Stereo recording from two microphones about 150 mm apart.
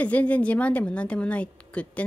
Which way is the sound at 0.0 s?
10° left (ahead or behind).